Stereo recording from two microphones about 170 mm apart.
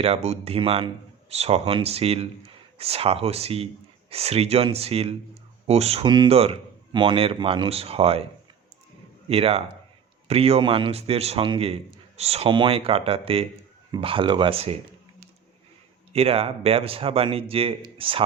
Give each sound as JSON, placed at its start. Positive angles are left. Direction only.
{"t": 0.0, "sound": "a man's voice", "side_deg": -40}
{"t": 9.3, "sound": "a man's voice", "side_deg": -35}
{"t": 16.1, "sound": "a man's voice", "side_deg": -35}